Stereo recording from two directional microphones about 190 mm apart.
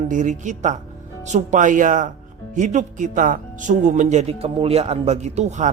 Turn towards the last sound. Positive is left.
turn(degrees=-35)  # may be behind; listen again after turning